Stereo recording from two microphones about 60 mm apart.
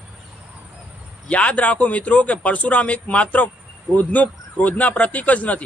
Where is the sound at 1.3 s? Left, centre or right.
Left.